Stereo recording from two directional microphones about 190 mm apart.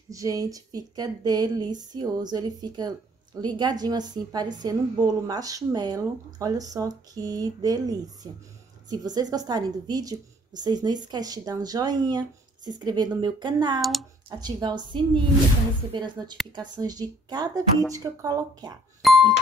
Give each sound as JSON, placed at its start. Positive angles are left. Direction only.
{"t": 0.1, "sound": "a woman's voice", "side_deg": -20}
{"t": 13.7, "sound": "speech", "side_deg": 0}
{"t": 14.3, "sound": "a woman's voice", "side_deg": -20}
{"t": 19.0, "sound": "music", "side_deg": 0}